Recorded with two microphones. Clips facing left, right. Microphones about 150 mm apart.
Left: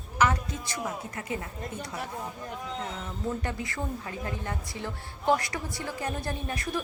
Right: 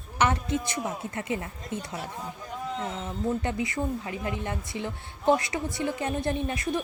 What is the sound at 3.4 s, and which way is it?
A woman's voice, 20° right (ahead or behind).